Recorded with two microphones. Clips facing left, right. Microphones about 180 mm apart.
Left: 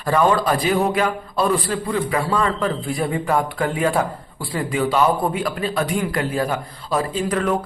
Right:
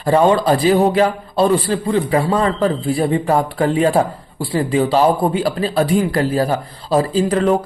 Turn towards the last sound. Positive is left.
turn(degrees=-30)  # may be behind; listen again after turning